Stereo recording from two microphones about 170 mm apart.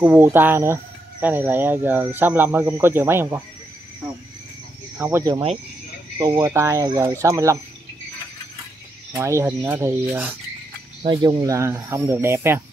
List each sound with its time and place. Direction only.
0.0 s speech: 10° right (ahead or behind)
4.9 s speech: 10° right (ahead or behind)
5.2 s speech: 30° right (ahead or behind)
6.1 s speech: 20° right (ahead or behind)
9.1 s speech: 15° right (ahead or behind)
11.0 s speech: 25° right (ahead or behind)